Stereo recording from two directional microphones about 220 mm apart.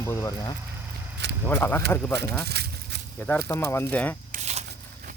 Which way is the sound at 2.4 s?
45° right (ahead or behind).